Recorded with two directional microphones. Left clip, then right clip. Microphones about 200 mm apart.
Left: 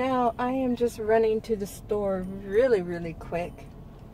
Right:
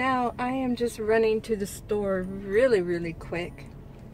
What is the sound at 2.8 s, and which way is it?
Speech, 40° right (ahead or behind).